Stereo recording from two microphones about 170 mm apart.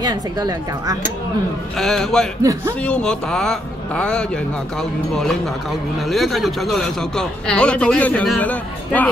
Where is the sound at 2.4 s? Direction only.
20° right (ahead or behind).